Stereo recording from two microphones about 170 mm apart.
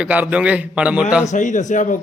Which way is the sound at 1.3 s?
45° left (ahead or behind).